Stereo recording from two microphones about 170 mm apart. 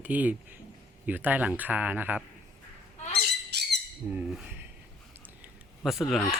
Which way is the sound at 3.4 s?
75° right (ahead or behind).